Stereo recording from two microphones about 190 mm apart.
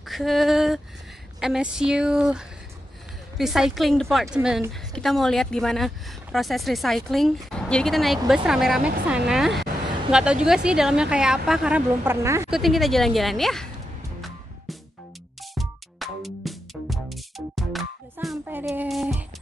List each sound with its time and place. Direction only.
0.1 s a woman's voice: centre (ahead or behind)
12.4 s a woman's voice: centre (ahead or behind)
15.5 s music: centre (ahead or behind)